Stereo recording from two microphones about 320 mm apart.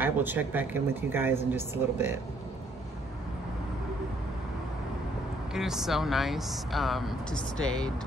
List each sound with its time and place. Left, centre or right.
0.0 s speech: centre
5.5 s speech: centre